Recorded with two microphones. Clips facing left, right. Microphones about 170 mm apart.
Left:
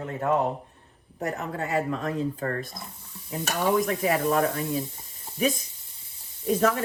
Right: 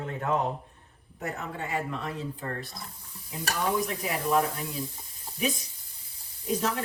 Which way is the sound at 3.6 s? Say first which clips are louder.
Left 5 dB; 65° left (ahead or behind).